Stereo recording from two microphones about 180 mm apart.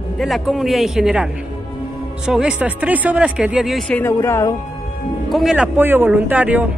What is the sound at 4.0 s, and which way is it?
Speech, 15° left (ahead or behind).